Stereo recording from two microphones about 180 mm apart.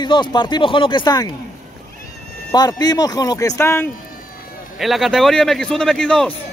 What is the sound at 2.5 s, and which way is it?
A man's voice, 20° left (ahead or behind).